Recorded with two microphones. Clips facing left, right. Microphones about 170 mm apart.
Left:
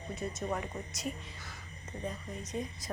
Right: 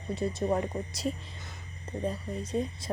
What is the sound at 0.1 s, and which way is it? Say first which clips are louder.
A woman's voice: right 7 dB; 30° right (ahead or behind).